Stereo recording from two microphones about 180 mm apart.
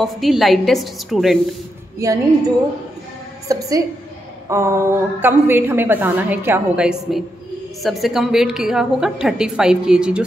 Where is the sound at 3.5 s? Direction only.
20° right (ahead or behind).